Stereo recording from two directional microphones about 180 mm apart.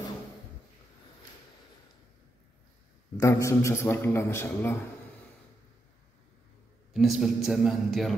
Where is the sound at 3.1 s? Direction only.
15° left (ahead or behind).